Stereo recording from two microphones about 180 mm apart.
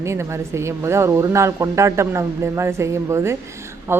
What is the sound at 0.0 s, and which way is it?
A woman's voice, 15° right (ahead or behind).